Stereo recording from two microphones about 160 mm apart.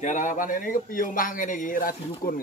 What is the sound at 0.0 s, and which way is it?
A man's voice, 50° left (ahead or behind).